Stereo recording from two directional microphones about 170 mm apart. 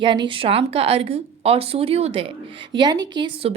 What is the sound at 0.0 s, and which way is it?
A woman's voice, 25° right (ahead or behind).